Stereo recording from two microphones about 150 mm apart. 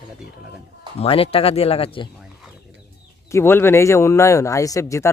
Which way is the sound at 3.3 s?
15° left (ahead or behind).